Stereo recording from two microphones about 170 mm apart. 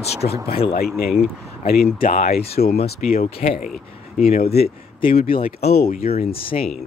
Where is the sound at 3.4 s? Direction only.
45° left (ahead or behind).